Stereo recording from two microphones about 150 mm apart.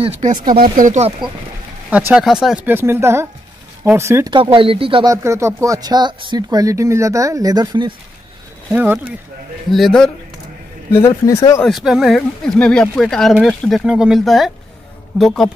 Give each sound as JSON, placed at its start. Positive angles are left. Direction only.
{"t": 0.2, "sound": "speech", "side_deg": -40}
{"t": 0.7, "sound": "speech", "side_deg": -60}
{"t": 1.9, "sound": "speech", "side_deg": -10}
{"t": 4.3, "sound": "speech", "side_deg": -35}
{"t": 5.1, "sound": "speech", "side_deg": -20}
{"t": 8.7, "sound": "speech", "side_deg": -10}
{"t": 9.7, "sound": "speech", "side_deg": 0}
{"t": 11.0, "sound": "speech", "side_deg": 20}
{"t": 11.6, "sound": "speech", "side_deg": 0}